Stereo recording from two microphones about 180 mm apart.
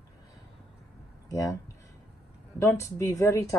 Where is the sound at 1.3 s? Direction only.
20° left (ahead or behind).